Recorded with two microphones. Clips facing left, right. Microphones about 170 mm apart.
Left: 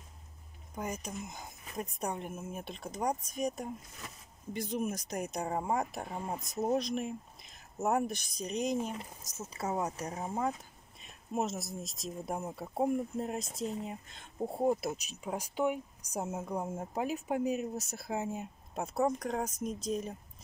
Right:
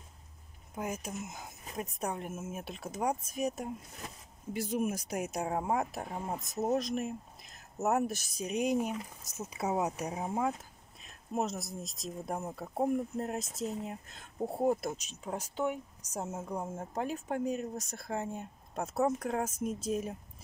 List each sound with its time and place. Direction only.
0.7 s speech: 5° right (ahead or behind)